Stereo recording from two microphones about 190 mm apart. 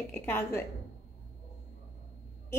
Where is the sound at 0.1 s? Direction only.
15° left (ahead or behind).